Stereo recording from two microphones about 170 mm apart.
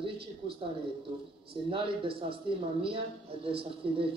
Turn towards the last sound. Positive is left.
turn(degrees=-30)  # may be behind; listen again after turning